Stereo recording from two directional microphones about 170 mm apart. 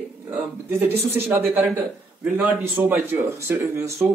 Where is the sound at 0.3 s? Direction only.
10° right (ahead or behind).